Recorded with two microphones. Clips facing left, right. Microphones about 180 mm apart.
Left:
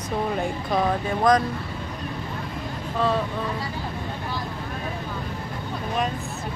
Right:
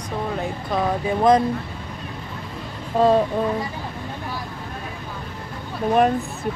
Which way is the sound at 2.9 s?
40° right (ahead or behind).